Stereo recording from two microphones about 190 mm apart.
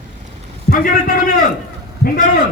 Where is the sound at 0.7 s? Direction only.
45° left (ahead or behind).